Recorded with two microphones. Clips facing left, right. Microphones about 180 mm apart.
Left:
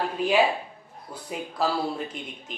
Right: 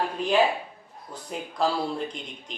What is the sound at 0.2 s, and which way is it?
Speech, 5° left (ahead or behind).